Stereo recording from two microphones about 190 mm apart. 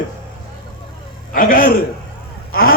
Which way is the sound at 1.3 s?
50° left (ahead or behind).